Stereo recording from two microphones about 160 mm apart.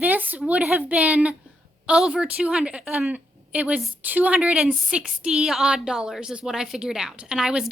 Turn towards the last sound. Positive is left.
turn(degrees=-5)  # may be behind; listen again after turning